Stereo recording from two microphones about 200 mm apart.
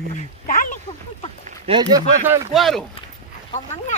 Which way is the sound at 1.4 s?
30° right (ahead or behind).